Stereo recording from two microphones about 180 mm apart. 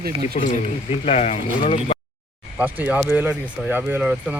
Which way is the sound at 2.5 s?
10° right (ahead or behind).